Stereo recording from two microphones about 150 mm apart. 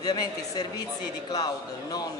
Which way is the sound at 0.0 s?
25° left (ahead or behind).